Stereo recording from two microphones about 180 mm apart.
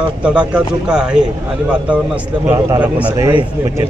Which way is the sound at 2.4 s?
10° right (ahead or behind).